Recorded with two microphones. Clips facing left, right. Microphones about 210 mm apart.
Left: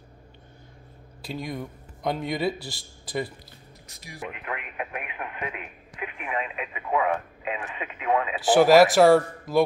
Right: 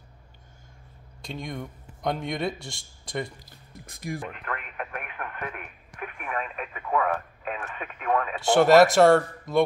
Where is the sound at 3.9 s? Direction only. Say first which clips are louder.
Right 14 dB; 50° right (ahead or behind).